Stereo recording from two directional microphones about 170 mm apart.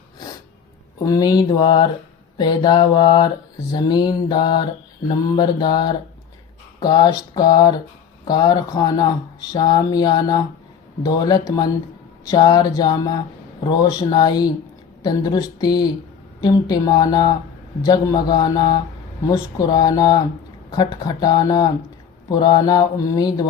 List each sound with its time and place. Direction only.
0.9 s speech: 20° left (ahead or behind)